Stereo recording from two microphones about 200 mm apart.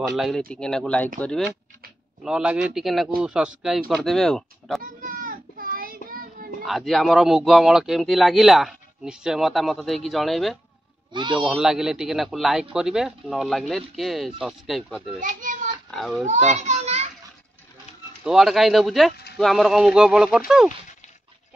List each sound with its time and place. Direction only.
0.1 s a man's voice: centre (ahead or behind)
5.0 s child singing: 45° right (ahead or behind)
6.6 s a man's voice: centre (ahead or behind)
15.1 s children playing: 40° right (ahead or behind)
15.9 s a man's voice: centre (ahead or behind)
16.3 s children playing: 35° right (ahead or behind)
18.2 s a man's voice: centre (ahead or behind)